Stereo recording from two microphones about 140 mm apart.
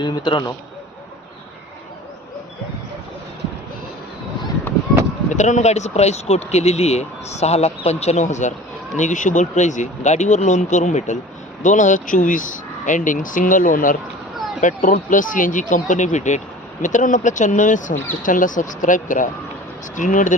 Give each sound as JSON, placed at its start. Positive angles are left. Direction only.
{"t": 0.0, "sound": "a man's voice", "side_deg": 35}
{"t": 5.3, "sound": "speech", "side_deg": 60}
{"t": 14.6, "sound": "speech", "side_deg": 65}